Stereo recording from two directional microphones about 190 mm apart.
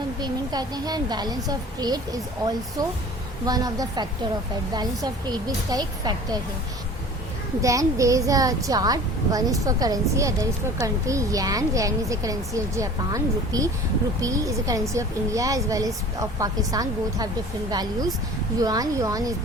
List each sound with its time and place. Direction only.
0.2 s speech: 20° right (ahead or behind)
7.6 s a woman's voice: 15° right (ahead or behind)